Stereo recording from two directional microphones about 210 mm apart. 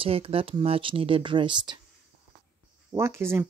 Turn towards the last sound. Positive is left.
turn(degrees=-10)  # may be behind; listen again after turning